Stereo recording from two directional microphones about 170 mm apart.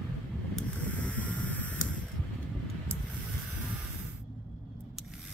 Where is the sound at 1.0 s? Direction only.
10° left (ahead or behind).